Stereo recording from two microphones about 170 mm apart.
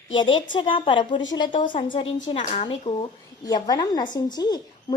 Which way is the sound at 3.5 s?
20° left (ahead or behind).